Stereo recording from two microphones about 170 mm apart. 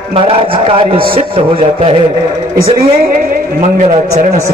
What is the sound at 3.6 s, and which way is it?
Speech, 40° right (ahead or behind).